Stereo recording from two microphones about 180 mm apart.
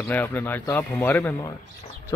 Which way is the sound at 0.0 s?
10° left (ahead or behind).